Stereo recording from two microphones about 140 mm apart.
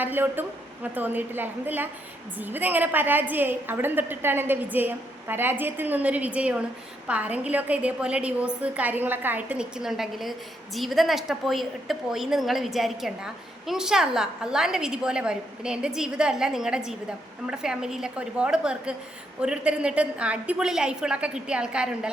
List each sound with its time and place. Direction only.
0.0 s a woman's voice: 15° right (ahead or behind)